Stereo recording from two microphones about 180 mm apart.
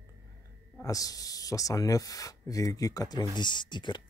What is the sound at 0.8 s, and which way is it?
Speech, 20° left (ahead or behind).